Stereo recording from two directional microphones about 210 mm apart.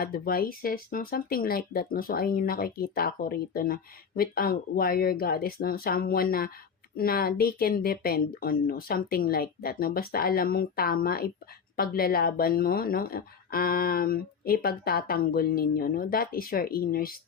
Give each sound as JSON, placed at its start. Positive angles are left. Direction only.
{"t": 0.0, "sound": "speech", "side_deg": 45}